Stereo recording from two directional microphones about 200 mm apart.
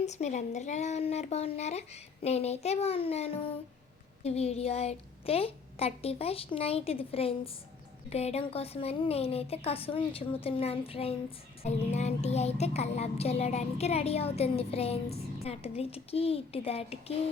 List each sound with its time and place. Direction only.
0.0 s a woman's voice: 35° left (ahead or behind)